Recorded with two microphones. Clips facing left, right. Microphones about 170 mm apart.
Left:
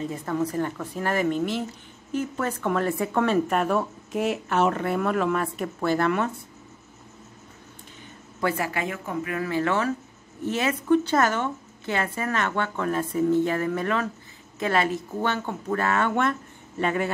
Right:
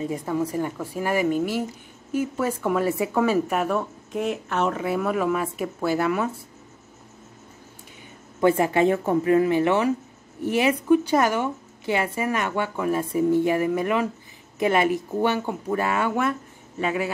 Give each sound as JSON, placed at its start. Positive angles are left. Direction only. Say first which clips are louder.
{"t": 0.0, "sound": "speech", "louder": "right 1 dB", "side_deg": -10}
{"t": 8.4, "sound": "speech", "louder": "right 8 dB", "side_deg": -20}